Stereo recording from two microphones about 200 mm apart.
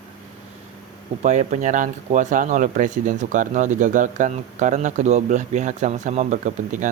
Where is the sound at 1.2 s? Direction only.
35° right (ahead or behind).